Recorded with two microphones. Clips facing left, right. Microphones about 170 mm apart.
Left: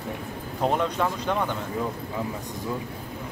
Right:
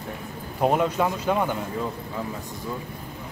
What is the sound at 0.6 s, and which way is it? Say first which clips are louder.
Speech: right 3 dB; 10° right (ahead or behind).